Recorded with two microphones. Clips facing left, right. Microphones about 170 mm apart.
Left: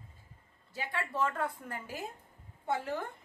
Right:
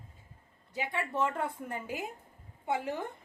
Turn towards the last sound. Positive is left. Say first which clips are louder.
# right 1 dB
turn(degrees=-15)  # may be behind; listen again after turning